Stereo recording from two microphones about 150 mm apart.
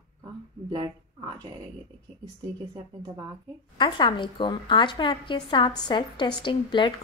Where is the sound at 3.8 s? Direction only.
35° left (ahead or behind).